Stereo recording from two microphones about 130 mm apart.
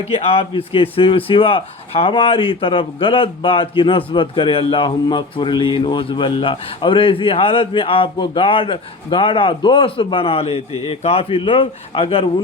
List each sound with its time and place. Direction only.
0.1 s speech: 50° left (ahead or behind)